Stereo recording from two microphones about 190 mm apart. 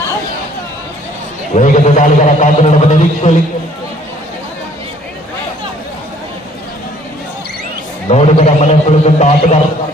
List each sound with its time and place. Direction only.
1.5 s a man's voice: 40° left (ahead or behind)
8.1 s a man's voice: 35° left (ahead or behind)